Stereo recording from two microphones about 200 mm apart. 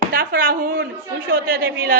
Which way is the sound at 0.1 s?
45° right (ahead or behind).